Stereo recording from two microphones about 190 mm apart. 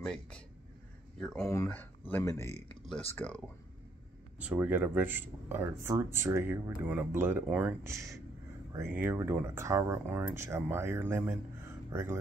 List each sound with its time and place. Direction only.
0.0 s speech: 5° left (ahead or behind)
1.4 s speech: 15° left (ahead or behind)
4.4 s speech: 10° right (ahead or behind)